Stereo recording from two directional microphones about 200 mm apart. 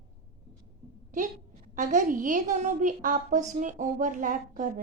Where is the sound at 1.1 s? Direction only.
40° right (ahead or behind).